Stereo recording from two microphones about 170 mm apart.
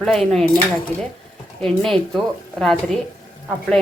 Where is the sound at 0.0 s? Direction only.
5° left (ahead or behind).